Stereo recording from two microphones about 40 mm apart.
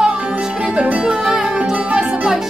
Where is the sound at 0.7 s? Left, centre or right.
Right.